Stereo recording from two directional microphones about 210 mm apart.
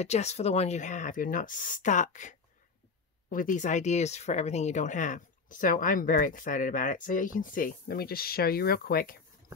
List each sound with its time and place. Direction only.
0.0 s speech: 30° left (ahead or behind)